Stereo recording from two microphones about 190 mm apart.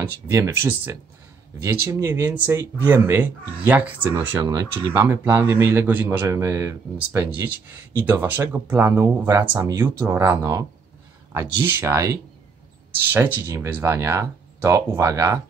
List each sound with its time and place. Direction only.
0.0 s speech: 15° right (ahead or behind)